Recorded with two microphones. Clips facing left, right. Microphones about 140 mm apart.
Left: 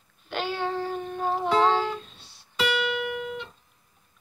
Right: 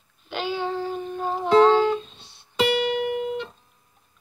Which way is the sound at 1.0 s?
5° left (ahead or behind).